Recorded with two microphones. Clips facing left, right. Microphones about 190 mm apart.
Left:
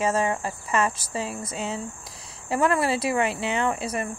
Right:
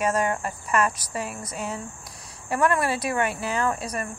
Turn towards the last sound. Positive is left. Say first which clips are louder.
# left 1 dB
turn(degrees=25)  # may be behind; listen again after turning